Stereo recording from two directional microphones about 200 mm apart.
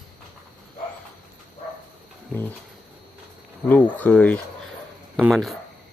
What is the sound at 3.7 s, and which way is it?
Speech, 10° left (ahead or behind).